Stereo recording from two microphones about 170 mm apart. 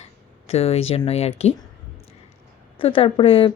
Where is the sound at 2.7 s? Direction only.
30° left (ahead or behind).